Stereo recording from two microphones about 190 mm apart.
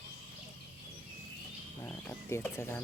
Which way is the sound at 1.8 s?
10° left (ahead or behind).